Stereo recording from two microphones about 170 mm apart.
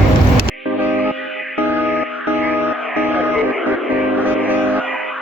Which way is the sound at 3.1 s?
5° left (ahead or behind).